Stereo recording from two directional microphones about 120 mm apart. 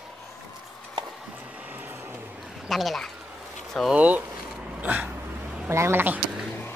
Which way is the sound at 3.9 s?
10° right (ahead or behind).